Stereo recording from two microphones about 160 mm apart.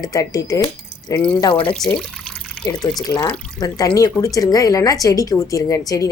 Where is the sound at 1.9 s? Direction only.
5° left (ahead or behind).